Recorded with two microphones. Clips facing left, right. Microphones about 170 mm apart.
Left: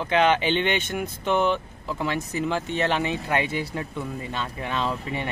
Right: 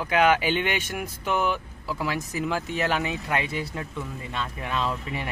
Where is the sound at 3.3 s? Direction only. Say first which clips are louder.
Left 3 dB; 30° left (ahead or behind).